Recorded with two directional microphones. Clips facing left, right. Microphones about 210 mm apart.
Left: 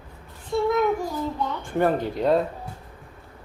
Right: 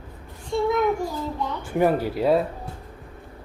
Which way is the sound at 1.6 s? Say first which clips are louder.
Right 2 dB; 10° right (ahead or behind).